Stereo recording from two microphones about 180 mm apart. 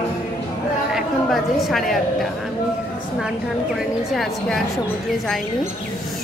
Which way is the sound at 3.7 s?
Centre (ahead or behind).